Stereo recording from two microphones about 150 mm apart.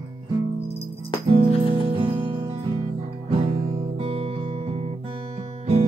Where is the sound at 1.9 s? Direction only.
35° right (ahead or behind).